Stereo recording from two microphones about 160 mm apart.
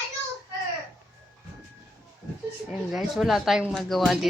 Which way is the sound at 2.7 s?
Centre (ahead or behind).